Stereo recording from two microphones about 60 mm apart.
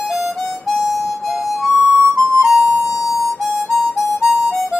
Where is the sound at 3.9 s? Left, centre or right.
Centre.